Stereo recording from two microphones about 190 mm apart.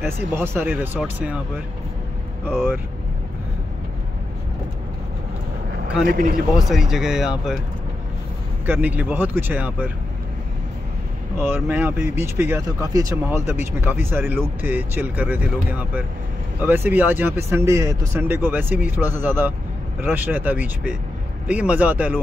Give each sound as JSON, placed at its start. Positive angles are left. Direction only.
{"t": 0.0, "sound": "speech", "side_deg": -10}
{"t": 6.0, "sound": "speech", "side_deg": -50}
{"t": 6.5, "sound": "speech", "side_deg": 0}
{"t": 8.6, "sound": "speech", "side_deg": -10}
{"t": 11.3, "sound": "speech", "side_deg": -10}